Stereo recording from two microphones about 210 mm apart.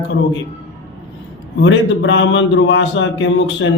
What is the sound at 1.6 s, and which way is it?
Speech, 60° left (ahead or behind).